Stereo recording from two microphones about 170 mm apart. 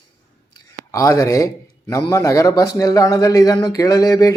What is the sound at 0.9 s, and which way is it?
Speech, 20° left (ahead or behind).